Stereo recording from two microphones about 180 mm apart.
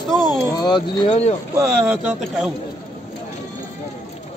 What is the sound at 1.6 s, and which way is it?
Speech, 10° right (ahead or behind).